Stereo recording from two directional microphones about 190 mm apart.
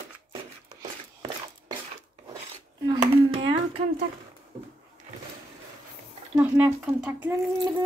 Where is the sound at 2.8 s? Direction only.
25° right (ahead or behind).